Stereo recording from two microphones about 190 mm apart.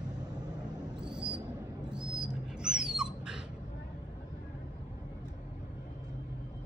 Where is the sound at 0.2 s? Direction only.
20° right (ahead or behind).